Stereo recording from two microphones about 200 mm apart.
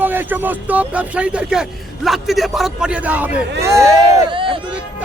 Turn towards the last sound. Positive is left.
turn(degrees=-25)  # may be behind; listen again after turning